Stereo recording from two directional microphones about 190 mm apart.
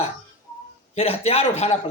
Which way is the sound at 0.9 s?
30° left (ahead or behind).